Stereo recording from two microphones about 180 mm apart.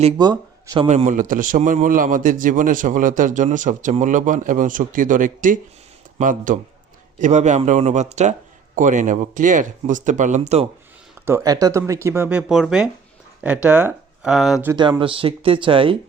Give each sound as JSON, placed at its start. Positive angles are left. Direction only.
{"t": 0.2, "sound": "speech", "side_deg": -25}
{"t": 0.9, "sound": "a man's voice", "side_deg": -40}
{"t": 11.3, "sound": "speech", "side_deg": -15}
{"t": 14.7, "sound": "speech", "side_deg": -25}